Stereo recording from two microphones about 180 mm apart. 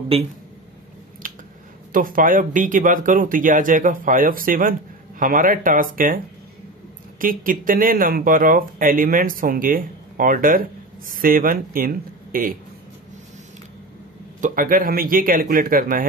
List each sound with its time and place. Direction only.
0.1 s a man's voice: 35° right (ahead or behind)
1.2 s a sound: 50° right (ahead or behind)
1.9 s speech: 50° right (ahead or behind)
14.4 s speech: 50° right (ahead or behind)